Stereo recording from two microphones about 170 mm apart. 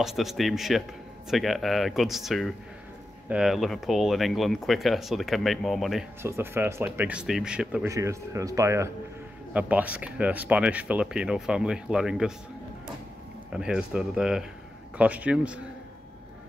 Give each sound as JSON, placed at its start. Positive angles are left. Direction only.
{"t": 0.0, "sound": "speech", "side_deg": 0}
{"t": 6.2, "sound": "speech", "side_deg": -15}
{"t": 7.9, "sound": "speech", "side_deg": -20}
{"t": 13.5, "sound": "speech", "side_deg": -5}